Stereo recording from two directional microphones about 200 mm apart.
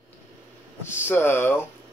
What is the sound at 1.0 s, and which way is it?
Speech, 10° left (ahead or behind).